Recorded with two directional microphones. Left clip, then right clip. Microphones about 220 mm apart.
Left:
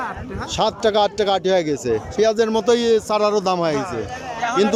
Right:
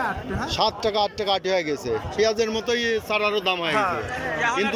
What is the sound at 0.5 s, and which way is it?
A man's voice, 15° left (ahead or behind).